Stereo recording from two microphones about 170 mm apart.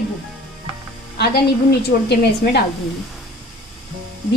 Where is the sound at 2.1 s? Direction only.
80° left.